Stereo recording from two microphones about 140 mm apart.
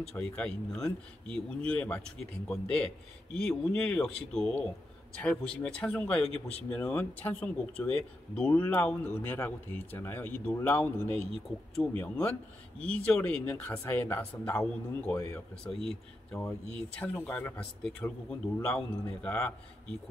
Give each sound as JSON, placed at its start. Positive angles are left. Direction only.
{"t": 0.0, "sound": "speech", "side_deg": 5}